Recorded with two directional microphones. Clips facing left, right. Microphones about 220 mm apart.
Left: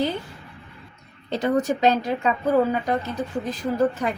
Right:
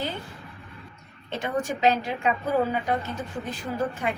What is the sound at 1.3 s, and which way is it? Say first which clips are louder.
Speech: left 7 dB; 40° left (ahead or behind).